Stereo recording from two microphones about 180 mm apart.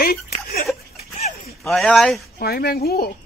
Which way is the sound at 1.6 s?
Centre (ahead or behind).